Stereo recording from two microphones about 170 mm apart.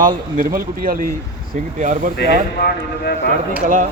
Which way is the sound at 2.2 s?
65° left (ahead or behind).